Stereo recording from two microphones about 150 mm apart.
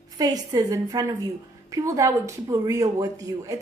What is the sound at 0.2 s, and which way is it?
A woman's voice, 25° right (ahead or behind).